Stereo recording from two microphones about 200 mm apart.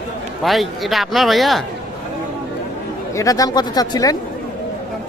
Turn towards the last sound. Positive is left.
turn(degrees=20)  # may be behind; listen again after turning